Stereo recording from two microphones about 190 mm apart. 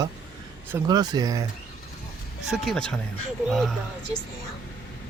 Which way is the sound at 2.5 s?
Centre (ahead or behind).